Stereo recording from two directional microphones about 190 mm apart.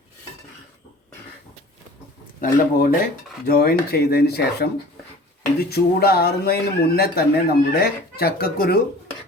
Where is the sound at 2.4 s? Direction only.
50° left (ahead or behind).